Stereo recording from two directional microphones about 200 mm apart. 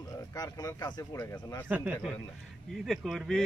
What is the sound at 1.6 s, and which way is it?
A man's voice, 10° right (ahead or behind).